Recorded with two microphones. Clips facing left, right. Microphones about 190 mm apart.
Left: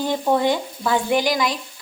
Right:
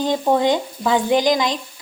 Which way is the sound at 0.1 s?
15° right (ahead or behind).